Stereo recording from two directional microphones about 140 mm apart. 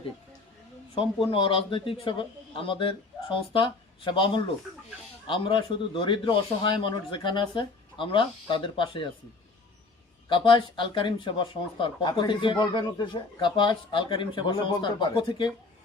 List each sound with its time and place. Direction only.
0.9 s a man's voice: 40° left (ahead or behind)
10.2 s a man's voice: 35° left (ahead or behind)